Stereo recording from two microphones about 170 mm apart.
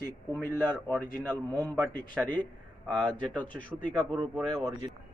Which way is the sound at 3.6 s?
50° left (ahead or behind).